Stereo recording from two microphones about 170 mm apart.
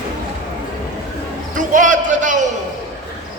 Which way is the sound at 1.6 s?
50° right (ahead or behind).